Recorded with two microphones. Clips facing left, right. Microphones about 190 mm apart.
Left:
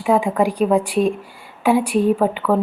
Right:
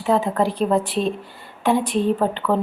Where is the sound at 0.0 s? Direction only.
15° left (ahead or behind).